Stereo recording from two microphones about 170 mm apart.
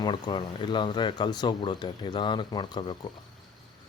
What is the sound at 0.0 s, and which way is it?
Speech, 25° left (ahead or behind).